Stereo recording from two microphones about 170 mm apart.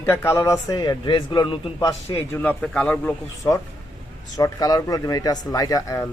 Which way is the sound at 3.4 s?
20° left (ahead or behind).